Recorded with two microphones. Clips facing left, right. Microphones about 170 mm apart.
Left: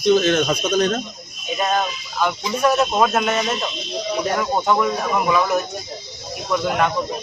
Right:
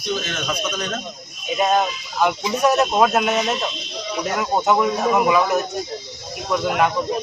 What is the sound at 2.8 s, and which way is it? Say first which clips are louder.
Speech: right 1 dB; centre (ahead or behind).